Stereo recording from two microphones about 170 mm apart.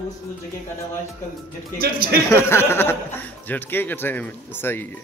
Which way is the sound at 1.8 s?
65° right (ahead or behind).